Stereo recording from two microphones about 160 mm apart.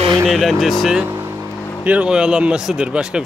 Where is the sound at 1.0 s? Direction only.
20° right (ahead or behind).